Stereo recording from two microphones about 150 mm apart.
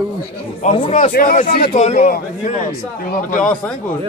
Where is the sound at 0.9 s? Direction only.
65° left (ahead or behind); by 1.7 s 90° left.